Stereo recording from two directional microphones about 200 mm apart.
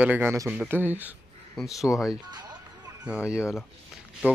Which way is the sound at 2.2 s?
20° right (ahead or behind).